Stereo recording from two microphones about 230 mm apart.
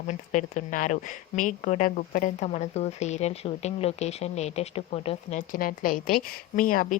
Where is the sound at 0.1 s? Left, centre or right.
Left.